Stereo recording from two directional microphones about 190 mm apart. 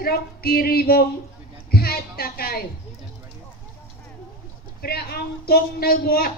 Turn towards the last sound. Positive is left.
turn(degrees=50)  # may be behind; listen again after turning